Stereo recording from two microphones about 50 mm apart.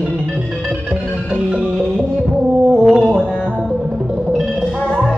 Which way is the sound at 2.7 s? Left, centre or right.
Centre.